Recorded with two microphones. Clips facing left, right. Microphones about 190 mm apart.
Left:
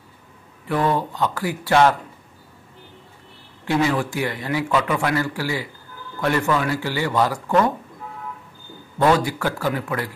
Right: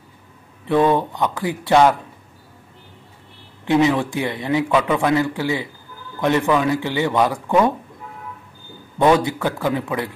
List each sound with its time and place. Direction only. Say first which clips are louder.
0.7 s speech: right 5 dB; 20° right (ahead or behind)
3.6 s speech: right 4 dB; 20° right (ahead or behind)
8.9 s speech: right 2 dB; 20° right (ahead or behind)